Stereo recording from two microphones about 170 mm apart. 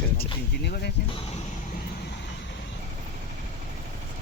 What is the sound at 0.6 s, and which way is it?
Music, 75° left (ahead or behind).